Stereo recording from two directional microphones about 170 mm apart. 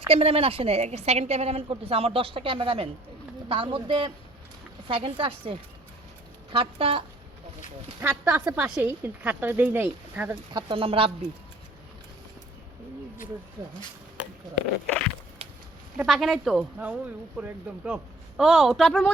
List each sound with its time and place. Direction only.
0.1 s a woman's voice: 35° right (ahead or behind)
8.1 s a woman's voice: 5° right (ahead or behind)
10.5 s a woman's voice: 30° right (ahead or behind)
15.4 s goat: 35° right (ahead or behind)
16.0 s speech: centre (ahead or behind)